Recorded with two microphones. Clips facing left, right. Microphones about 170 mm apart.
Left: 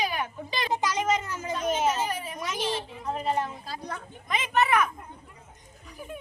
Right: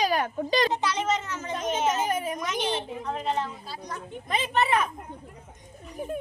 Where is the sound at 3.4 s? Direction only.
50° left (ahead or behind).